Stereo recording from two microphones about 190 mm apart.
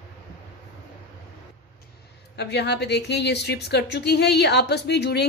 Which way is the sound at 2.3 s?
60° left (ahead or behind).